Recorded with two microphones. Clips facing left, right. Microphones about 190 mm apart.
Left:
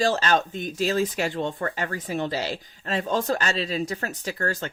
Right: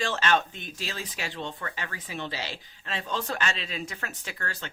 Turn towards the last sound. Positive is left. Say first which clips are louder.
# left 9 dB
turn(degrees=45)  # may be behind; listen again after turning